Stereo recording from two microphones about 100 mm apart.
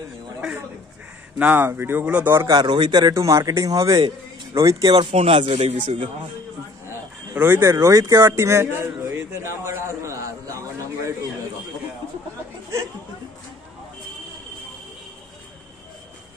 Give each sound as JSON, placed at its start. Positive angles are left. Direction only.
{"t": 1.4, "sound": "speech", "side_deg": -20}
{"t": 2.2, "sound": "speech", "side_deg": -25}
{"t": 2.5, "sound": "speech", "side_deg": -50}
{"t": 4.9, "sound": "speech", "side_deg": -80}
{"t": 7.3, "sound": "speech", "side_deg": -25}